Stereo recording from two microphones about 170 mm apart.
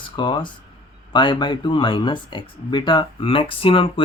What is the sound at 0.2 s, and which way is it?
Speech, 25° left (ahead or behind).